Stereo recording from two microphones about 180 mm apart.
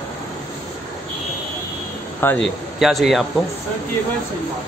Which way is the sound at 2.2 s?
10° left (ahead or behind).